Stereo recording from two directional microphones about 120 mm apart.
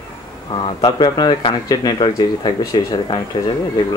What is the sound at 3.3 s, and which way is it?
Speech, 50° left (ahead or behind).